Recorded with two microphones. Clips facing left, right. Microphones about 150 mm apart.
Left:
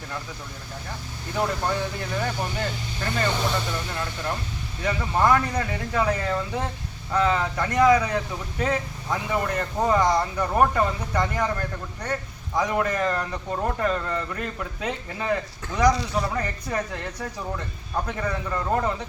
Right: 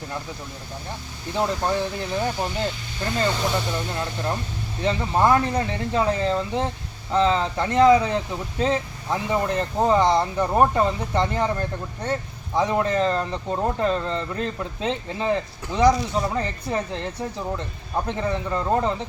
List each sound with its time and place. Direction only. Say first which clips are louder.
1.3 s speech: right 2 dB; 20° right (ahead or behind)